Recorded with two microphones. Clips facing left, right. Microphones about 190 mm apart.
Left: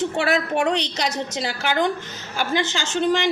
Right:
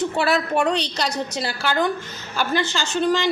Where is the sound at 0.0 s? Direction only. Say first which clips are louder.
Even; 25° left (ahead or behind).